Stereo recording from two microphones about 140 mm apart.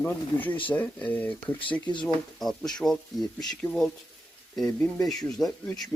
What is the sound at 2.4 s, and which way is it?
Speech, centre (ahead or behind).